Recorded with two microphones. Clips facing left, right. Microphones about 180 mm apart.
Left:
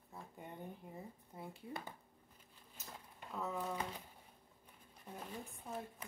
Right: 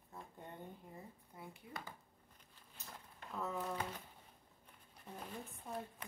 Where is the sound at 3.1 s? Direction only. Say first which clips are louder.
Even; 5° left (ahead or behind).